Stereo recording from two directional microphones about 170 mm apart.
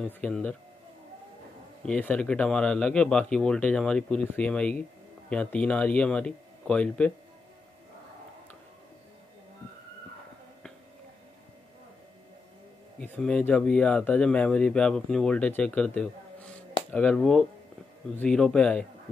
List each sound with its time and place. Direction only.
0.0 s speech: 5° left (ahead or behind)
1.9 s speech: 5° left (ahead or behind)
13.0 s speech: 10° left (ahead or behind)